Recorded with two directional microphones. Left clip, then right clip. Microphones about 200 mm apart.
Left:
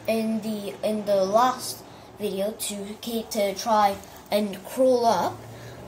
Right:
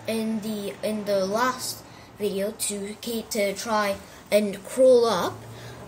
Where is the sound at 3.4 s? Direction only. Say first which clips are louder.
Left 4 dB; 50° right (ahead or behind).